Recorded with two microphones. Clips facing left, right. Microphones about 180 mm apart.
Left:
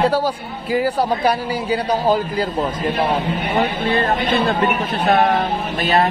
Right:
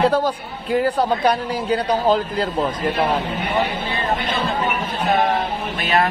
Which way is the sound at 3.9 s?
65° left (ahead or behind).